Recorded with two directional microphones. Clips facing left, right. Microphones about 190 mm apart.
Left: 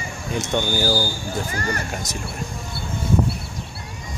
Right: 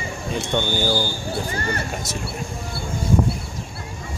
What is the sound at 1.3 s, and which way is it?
Speech, 30° right (ahead or behind).